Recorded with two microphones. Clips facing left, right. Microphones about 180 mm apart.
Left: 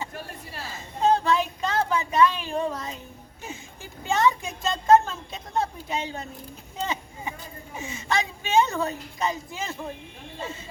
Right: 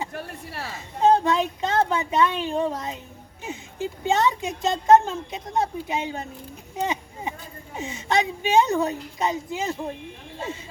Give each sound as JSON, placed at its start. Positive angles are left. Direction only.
{"t": 1.0, "sound": "a woman's voice", "side_deg": -20}
{"t": 6.7, "sound": "a sound", "side_deg": -15}
{"t": 7.8, "sound": "a woman's voice", "side_deg": -20}